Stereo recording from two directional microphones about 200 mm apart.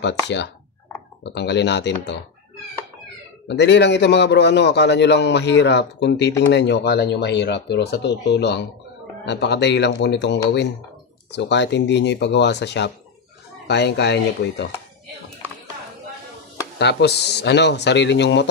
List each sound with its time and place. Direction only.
1.2 s a man's voice: 60° left (ahead or behind)
3.4 s a man's voice: 60° left (ahead or behind)
16.7 s a man's voice: 55° left (ahead or behind)